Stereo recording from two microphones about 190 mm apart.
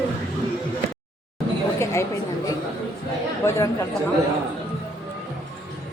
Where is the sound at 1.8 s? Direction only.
15° left (ahead or behind).